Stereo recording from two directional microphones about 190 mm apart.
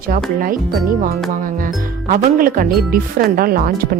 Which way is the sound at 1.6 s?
45° right (ahead or behind).